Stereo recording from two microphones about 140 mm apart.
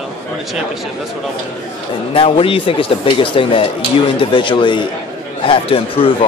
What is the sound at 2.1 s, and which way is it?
Speech, 40° left (ahead or behind).